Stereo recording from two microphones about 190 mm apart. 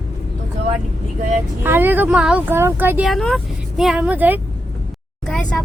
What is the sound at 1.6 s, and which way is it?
Speech, 10° right (ahead or behind).